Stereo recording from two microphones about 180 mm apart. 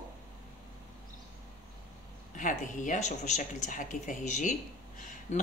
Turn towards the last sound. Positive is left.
turn(degrees=40)  # may be behind; listen again after turning